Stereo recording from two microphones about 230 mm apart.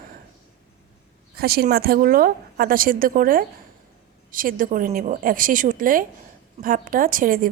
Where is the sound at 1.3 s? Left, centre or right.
Right.